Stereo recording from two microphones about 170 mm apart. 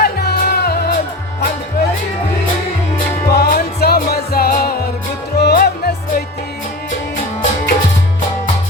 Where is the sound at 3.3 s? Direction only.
65° left (ahead or behind).